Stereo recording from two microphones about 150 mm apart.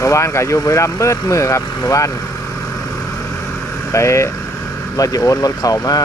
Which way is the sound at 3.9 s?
20° left (ahead or behind).